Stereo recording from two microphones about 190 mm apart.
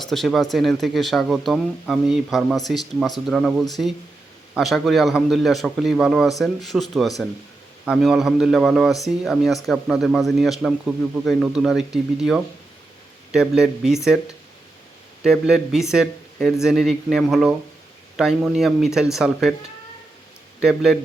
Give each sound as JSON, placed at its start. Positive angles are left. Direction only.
{"t": 0.0, "sound": "speech", "side_deg": 0}
{"t": 15.2, "sound": "speech", "side_deg": 0}
{"t": 20.6, "sound": "speech", "side_deg": -5}